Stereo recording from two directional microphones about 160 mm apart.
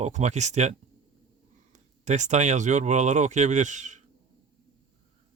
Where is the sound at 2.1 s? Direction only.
45° right (ahead or behind).